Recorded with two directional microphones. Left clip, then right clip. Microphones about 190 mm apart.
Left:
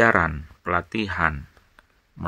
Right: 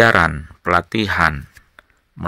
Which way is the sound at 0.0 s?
25° right (ahead or behind).